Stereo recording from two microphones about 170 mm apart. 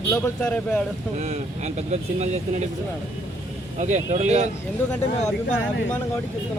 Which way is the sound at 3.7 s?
40° right (ahead or behind).